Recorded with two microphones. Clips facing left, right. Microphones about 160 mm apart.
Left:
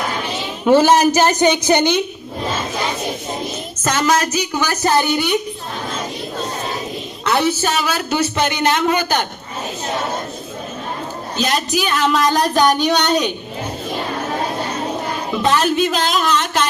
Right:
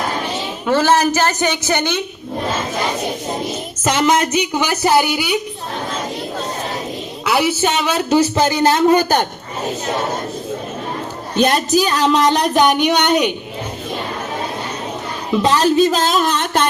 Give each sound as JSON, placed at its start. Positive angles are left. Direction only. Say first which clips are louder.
{"t": 0.6, "sound": "a woman's voice", "louder": "left 3 dB", "side_deg": 15}
{"t": 3.8, "sound": "a woman's voice", "louder": "right 2 dB", "side_deg": -15}
{"t": 7.3, "sound": "speech", "louder": "right 1 dB", "side_deg": -10}
{"t": 11.3, "sound": "speech", "louder": "right 5 dB", "side_deg": -50}
{"t": 12.5, "sound": "a woman's voice", "louder": "right 1 dB", "side_deg": -15}
{"t": 15.4, "sound": "speech", "louder": "right 3 dB", "side_deg": -30}